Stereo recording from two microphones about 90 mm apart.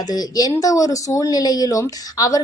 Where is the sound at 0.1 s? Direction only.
45° left (ahead or behind).